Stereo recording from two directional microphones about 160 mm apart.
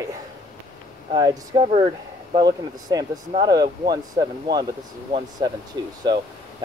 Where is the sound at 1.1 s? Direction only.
30° right (ahead or behind).